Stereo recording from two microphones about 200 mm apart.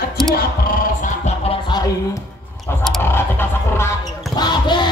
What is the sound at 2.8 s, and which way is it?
Basketball bounce, 5° left (ahead or behind).